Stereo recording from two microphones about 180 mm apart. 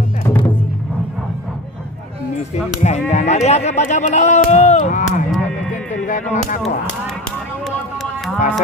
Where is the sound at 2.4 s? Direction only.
40° left (ahead or behind).